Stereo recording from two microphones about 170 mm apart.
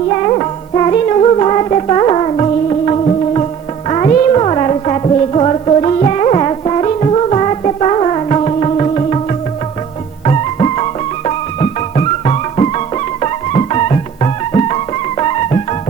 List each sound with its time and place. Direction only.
0.3 s music: 30° left (ahead or behind)
10.2 s music: 35° left (ahead or behind)